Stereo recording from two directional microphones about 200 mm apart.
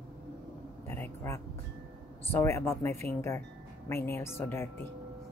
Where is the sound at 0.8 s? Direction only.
10° left (ahead or behind).